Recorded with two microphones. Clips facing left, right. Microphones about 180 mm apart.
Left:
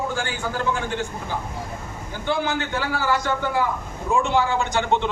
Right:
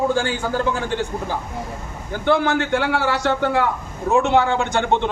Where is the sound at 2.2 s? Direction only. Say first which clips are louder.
Right 6 dB; 60° right (ahead or behind).